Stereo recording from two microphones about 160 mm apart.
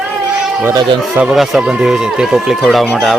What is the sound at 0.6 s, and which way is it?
Speech, 20° right (ahead or behind).